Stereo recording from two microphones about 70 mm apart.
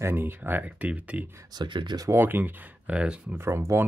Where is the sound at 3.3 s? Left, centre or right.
Right.